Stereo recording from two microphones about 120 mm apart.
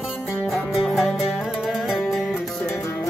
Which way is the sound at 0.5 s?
Centre (ahead or behind).